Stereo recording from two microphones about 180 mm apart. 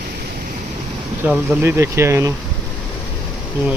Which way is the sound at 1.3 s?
10° right (ahead or behind).